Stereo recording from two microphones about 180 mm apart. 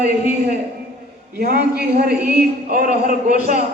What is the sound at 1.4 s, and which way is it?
A man's voice, 55° right (ahead or behind).